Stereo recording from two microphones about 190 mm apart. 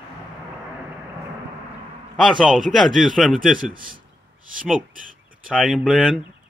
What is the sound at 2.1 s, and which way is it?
A man's voice, centre (ahead or behind).